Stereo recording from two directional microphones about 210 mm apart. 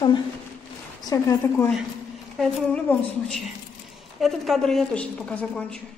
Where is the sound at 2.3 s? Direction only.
5° left (ahead or behind).